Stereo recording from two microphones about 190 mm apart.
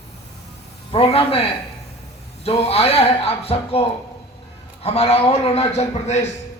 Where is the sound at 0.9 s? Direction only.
30° left (ahead or behind).